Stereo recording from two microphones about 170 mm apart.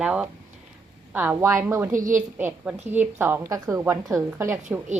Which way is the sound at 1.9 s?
50° right (ahead or behind).